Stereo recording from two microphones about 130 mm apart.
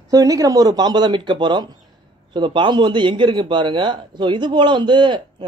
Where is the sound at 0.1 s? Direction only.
25° right (ahead or behind).